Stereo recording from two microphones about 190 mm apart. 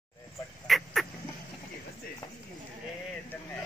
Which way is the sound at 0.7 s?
Centre (ahead or behind).